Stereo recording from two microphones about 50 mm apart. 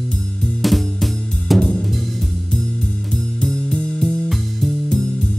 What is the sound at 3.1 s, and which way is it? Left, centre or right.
Music, centre.